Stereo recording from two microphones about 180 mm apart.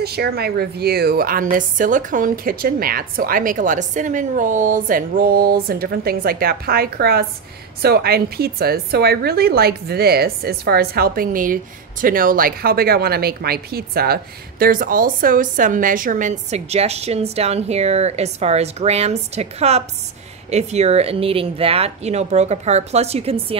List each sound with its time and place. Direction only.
0.0 s a woman's voice: 60° right (ahead or behind); by 23.4 s 35° right (ahead or behind)